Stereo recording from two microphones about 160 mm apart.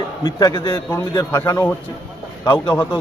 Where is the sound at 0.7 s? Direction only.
15° left (ahead or behind).